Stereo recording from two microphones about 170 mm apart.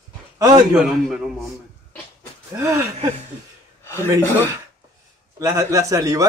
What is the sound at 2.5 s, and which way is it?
Speech, 20° right (ahead or behind).